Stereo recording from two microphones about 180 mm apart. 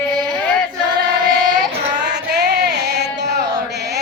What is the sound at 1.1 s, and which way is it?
Child singing, 20° right (ahead or behind).